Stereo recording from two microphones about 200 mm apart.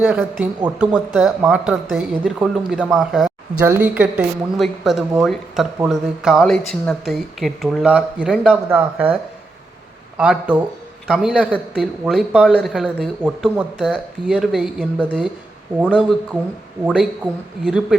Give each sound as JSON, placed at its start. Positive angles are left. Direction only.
{"t": 0.6, "sound": "a woman's voice", "side_deg": -10}
{"t": 10.2, "sound": "a woman's voice", "side_deg": -5}